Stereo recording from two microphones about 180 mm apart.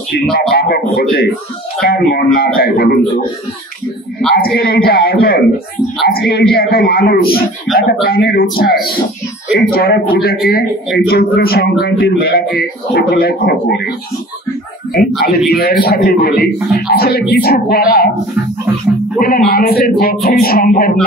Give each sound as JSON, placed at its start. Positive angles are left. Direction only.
{"t": 0.1, "sound": "speech", "side_deg": 60}
{"t": 4.4, "sound": "speech", "side_deg": 60}
{"t": 15.2, "sound": "speech", "side_deg": 55}
{"t": 19.1, "sound": "speech", "side_deg": 55}